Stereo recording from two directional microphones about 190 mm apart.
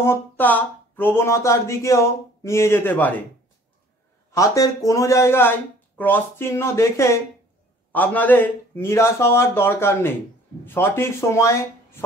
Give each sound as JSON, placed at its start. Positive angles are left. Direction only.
{"t": 0.0, "sound": "speech", "side_deg": 10}
{"t": 4.4, "sound": "speech", "side_deg": 15}